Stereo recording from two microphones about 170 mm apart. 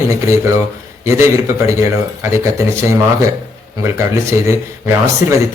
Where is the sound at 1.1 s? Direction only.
15° right (ahead or behind).